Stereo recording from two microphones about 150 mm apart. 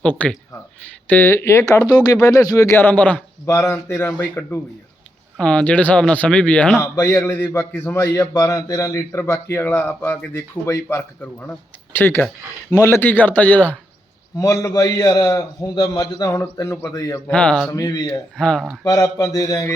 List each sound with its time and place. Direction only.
0.0 s a man's voice: 10° left (ahead or behind)
14.3 s a man's voice: 20° left (ahead or behind)
17.2 s a man's voice: 10° left (ahead or behind)
17.7 s a man's voice: 25° left (ahead or behind)
18.3 s speech: 5° left (ahead or behind)
18.8 s a man's voice: 20° left (ahead or behind)